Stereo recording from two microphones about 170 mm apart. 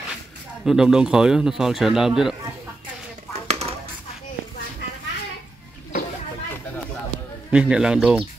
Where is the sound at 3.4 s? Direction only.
40° right (ahead or behind).